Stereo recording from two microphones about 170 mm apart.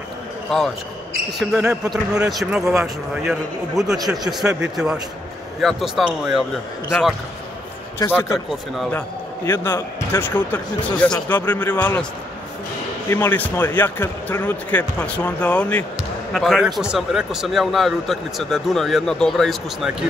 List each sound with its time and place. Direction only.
0.5 s speech: centre (ahead or behind)
8.0 s speech: 15° left (ahead or behind)
9.5 s speech: 15° left (ahead or behind)
13.1 s speech: 10° left (ahead or behind)